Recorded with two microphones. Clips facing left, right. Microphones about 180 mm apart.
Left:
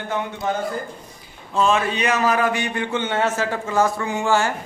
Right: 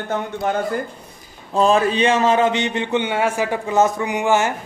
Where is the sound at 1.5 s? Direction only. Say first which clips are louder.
Right 4 dB; 35° right (ahead or behind); by 4.5 s 20° right (ahead or behind).